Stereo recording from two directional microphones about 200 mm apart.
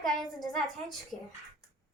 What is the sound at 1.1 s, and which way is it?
Speech, centre (ahead or behind).